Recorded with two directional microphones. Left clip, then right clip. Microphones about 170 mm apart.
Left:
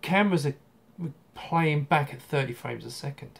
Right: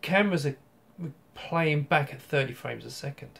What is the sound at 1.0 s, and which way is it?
Speech, 10° left (ahead or behind).